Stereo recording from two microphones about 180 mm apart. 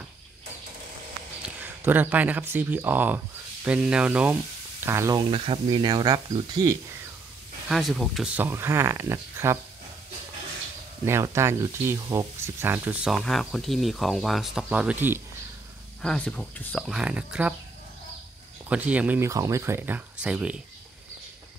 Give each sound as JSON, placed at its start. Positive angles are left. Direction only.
{"t": 1.4, "sound": "speech", "side_deg": -10}
{"t": 5.3, "sound": "speech", "side_deg": -30}
{"t": 7.6, "sound": "speech", "side_deg": 0}
{"t": 11.1, "sound": "speech", "side_deg": -15}
{"t": 16.0, "sound": "speech", "side_deg": 5}
{"t": 18.7, "sound": "speech", "side_deg": -5}